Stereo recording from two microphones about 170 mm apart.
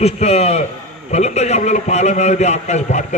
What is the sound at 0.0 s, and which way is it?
A man's voice, 40° left (ahead or behind).